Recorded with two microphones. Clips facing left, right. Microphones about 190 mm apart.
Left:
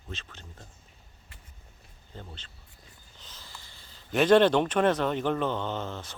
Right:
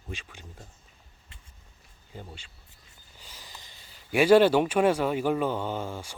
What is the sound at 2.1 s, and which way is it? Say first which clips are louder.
Speech: right 2 dB; 10° right (ahead or behind).